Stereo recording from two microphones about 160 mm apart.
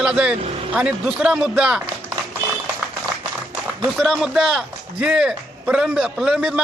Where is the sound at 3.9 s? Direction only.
5° right (ahead or behind).